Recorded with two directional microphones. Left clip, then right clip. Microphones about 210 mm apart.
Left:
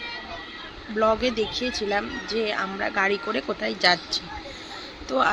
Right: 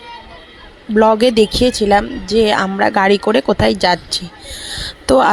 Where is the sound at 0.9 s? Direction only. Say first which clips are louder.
Right 12 dB; 50° right (ahead or behind).